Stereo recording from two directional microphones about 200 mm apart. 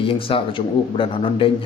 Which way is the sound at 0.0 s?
25° left (ahead or behind).